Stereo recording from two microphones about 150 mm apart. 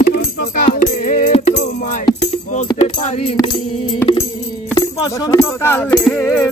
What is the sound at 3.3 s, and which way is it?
Speech, 30° left (ahead or behind).